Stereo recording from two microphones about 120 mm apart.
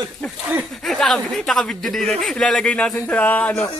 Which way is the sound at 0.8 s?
5° left (ahead or behind).